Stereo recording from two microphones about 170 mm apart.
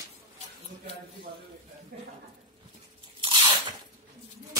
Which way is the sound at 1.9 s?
55° right (ahead or behind).